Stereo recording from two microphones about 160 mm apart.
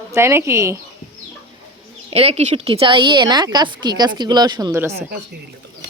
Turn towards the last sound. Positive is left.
turn(degrees=-15)  # may be behind; listen again after turning